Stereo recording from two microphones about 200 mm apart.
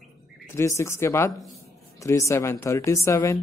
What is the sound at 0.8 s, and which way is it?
Speech, 15° left (ahead or behind).